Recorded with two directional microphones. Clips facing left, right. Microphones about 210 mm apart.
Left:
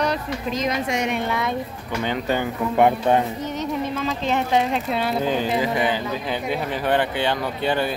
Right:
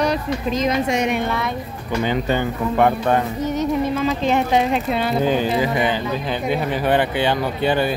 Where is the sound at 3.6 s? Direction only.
10° right (ahead or behind).